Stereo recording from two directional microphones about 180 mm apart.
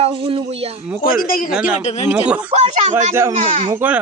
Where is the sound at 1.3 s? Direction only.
50° left (ahead or behind).